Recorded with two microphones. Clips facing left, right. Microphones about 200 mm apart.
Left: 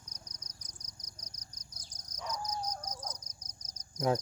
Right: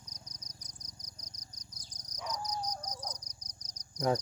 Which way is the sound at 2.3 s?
20° right (ahead or behind).